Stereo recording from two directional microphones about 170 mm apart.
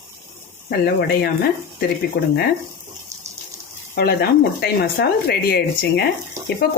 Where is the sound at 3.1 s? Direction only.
20° right (ahead or behind).